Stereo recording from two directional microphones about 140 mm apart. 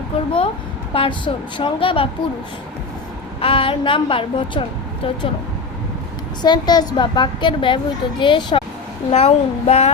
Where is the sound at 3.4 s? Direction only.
40° left (ahead or behind).